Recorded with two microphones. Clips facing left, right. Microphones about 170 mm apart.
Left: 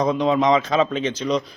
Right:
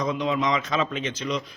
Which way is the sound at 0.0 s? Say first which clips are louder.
Left 6 dB; 35° left (ahead or behind).